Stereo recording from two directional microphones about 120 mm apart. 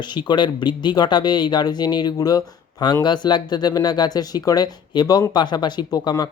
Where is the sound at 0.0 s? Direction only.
40° left (ahead or behind).